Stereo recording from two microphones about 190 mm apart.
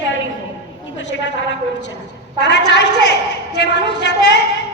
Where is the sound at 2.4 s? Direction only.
65° left (ahead or behind).